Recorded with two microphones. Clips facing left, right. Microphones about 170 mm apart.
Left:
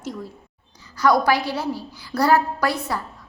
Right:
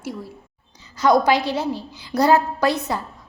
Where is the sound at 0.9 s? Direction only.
20° right (ahead or behind).